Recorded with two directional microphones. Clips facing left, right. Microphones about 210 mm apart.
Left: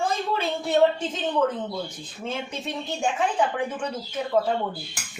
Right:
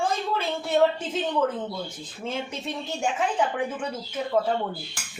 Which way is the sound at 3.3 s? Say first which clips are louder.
Left 1 dB; 5° right (ahead or behind).